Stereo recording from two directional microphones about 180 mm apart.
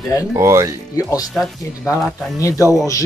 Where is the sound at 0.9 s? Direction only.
20° left (ahead or behind).